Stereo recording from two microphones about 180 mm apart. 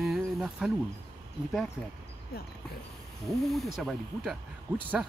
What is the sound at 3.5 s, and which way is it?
Speech, centre (ahead or behind).